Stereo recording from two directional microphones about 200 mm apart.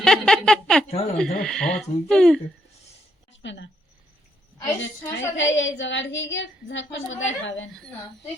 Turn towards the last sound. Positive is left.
turn(degrees=70)  # may be behind; listen again after turning